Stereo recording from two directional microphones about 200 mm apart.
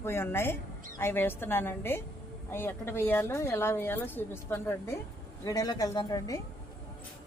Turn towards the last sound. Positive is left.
turn(degrees=20)  # may be behind; listen again after turning